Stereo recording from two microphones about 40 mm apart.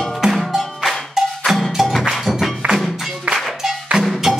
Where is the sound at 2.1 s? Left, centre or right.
Centre.